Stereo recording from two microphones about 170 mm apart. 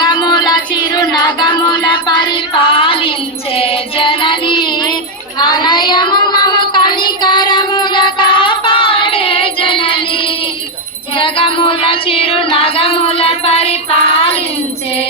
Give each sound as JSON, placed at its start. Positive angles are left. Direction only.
{"t": 0.1, "sound": "music", "side_deg": 25}
{"t": 5.4, "sound": "child singing", "side_deg": 25}
{"t": 11.2, "sound": "music", "side_deg": 30}